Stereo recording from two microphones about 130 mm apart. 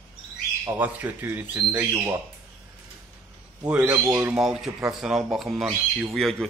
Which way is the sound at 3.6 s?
10° right (ahead or behind).